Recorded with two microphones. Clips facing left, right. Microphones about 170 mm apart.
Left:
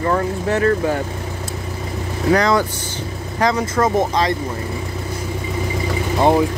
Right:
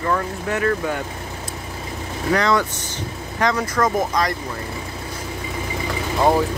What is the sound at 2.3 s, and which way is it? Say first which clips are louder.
Speech: left 2 dB; 40° left (ahead or behind).